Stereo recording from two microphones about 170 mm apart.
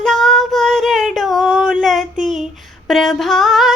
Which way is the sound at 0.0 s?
Centre (ahead or behind).